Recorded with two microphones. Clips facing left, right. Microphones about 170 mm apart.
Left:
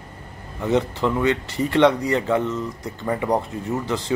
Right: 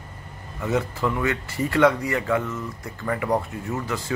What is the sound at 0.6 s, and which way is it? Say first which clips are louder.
Speech: left 4 dB; 30° left (ahead or behind).